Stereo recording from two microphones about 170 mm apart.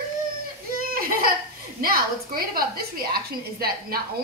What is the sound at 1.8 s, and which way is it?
A woman's voice, 60° right (ahead or behind).